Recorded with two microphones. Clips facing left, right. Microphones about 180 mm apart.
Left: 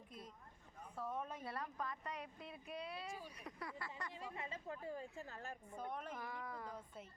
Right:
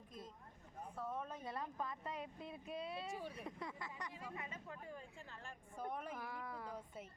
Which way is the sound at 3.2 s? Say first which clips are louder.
Right 3 dB; 25° right (ahead or behind).